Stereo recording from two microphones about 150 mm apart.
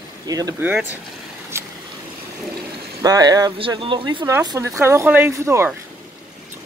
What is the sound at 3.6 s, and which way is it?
Speech, 35° right (ahead or behind).